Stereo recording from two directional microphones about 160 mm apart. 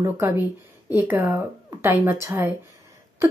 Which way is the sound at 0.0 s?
20° right (ahead or behind).